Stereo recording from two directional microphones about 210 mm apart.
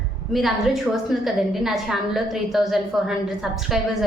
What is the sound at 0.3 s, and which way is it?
A woman's voice, centre (ahead or behind).